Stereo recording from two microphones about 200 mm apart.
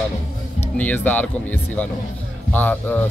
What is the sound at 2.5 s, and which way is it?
Speech, 10° left (ahead or behind).